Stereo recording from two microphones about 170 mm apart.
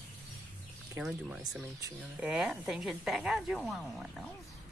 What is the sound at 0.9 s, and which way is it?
A woman's voice, 5° right (ahead or behind).